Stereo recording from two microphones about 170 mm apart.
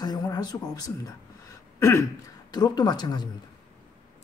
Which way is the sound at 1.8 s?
20° left (ahead or behind).